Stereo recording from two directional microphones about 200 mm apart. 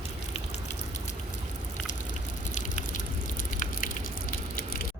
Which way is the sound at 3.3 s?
40° left (ahead or behind).